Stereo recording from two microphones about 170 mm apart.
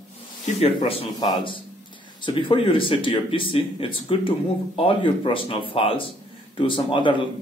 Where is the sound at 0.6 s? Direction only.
35° left (ahead or behind).